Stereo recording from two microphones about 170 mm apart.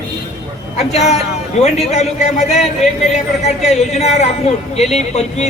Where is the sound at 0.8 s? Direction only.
40° left (ahead or behind).